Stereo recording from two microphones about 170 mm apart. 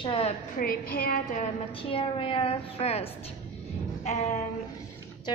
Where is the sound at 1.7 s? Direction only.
30° left (ahead or behind).